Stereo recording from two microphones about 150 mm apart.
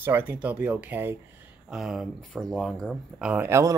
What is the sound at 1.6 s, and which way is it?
Speech, 5° right (ahead or behind).